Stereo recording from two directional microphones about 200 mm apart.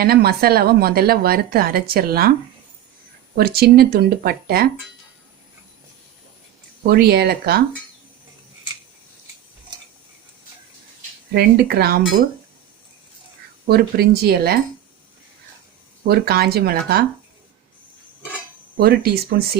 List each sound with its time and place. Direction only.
0.0 s a woman's voice: 50° right (ahead or behind)
3.3 s a woman's voice: 50° right (ahead or behind)
6.8 s a woman's voice: 50° right (ahead or behind)
11.3 s a woman's voice: 50° right (ahead or behind)
13.7 s a woman's voice: 50° right (ahead or behind)
16.0 s a woman's voice: 50° right (ahead or behind)
18.8 s a woman's voice: 50° right (ahead or behind)